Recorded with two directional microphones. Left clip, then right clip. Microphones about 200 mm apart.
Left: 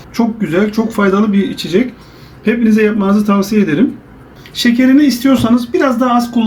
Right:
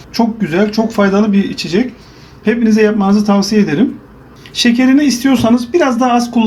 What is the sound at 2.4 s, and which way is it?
Speech, 25° right (ahead or behind).